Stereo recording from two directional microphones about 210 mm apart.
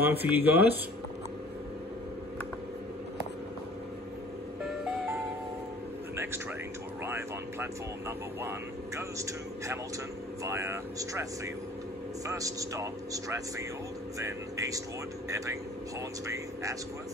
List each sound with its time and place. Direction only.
0.0 s speech: 10° right (ahead or behind)
7.1 s vehicle: 10° right (ahead or behind)
8.4 s speech: 15° right (ahead or behind)